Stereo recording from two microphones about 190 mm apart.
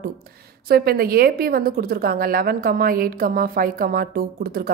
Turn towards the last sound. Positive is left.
turn(degrees=-50)  # may be behind; listen again after turning